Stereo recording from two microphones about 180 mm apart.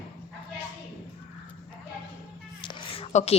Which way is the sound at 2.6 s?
25° left (ahead or behind).